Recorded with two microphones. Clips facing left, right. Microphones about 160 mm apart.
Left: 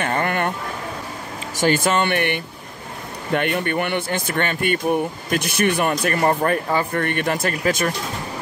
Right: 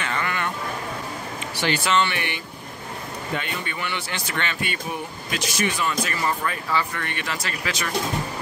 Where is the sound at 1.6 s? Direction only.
45° left (ahead or behind).